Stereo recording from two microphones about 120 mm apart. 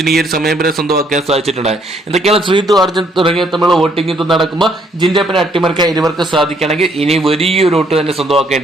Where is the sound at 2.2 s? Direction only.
50° right (ahead or behind).